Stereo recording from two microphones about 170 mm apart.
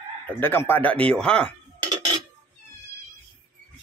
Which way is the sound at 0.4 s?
15° left (ahead or behind).